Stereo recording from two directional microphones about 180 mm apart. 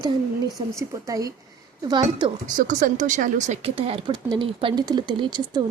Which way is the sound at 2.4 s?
45° right (ahead or behind).